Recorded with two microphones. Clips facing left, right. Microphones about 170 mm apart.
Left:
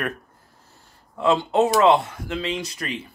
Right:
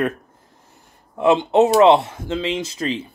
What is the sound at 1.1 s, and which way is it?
Speech, 20° right (ahead or behind).